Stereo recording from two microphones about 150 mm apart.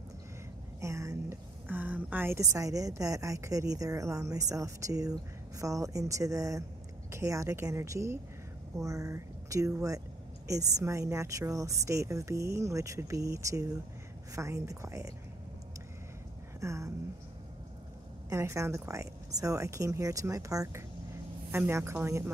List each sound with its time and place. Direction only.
0.7 s a woman's voice: 20° right (ahead or behind)
16.6 s speech: 20° right (ahead or behind)
18.3 s speech: 20° right (ahead or behind)